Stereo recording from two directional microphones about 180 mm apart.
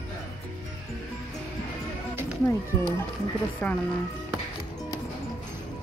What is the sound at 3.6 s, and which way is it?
Speech, 10° left (ahead or behind).